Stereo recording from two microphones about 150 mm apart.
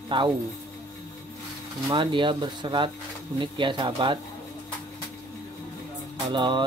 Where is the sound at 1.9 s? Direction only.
35° right (ahead or behind).